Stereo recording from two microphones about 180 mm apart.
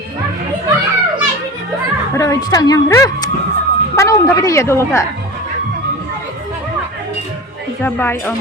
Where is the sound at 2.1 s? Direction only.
20° left (ahead or behind).